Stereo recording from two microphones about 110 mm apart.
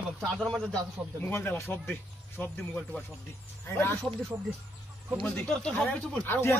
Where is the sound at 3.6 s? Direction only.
20° left (ahead or behind).